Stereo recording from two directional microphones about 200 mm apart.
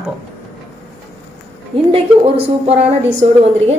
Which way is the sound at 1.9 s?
30° right (ahead or behind).